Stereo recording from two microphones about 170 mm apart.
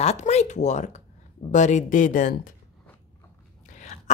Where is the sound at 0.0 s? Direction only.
40° left (ahead or behind).